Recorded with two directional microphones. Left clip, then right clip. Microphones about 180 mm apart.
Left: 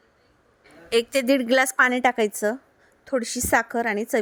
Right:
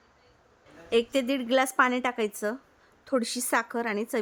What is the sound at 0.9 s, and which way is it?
A woman's voice, 35° left (ahead or behind).